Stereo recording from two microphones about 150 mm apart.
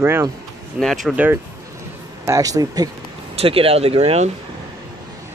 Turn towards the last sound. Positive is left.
turn(degrees=-45)  # may be behind; listen again after turning